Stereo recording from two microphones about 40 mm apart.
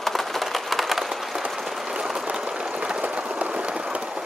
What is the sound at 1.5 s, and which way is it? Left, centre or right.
Applause, centre.